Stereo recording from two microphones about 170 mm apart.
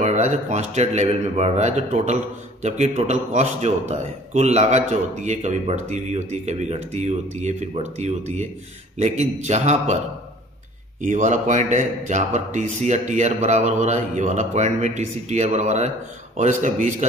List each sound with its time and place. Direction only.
0.0 s a man's voice: 45° right (ahead or behind)
11.0 s a man's voice: 45° right (ahead or behind)